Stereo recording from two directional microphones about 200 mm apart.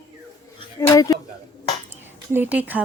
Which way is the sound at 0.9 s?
15° left (ahead or behind).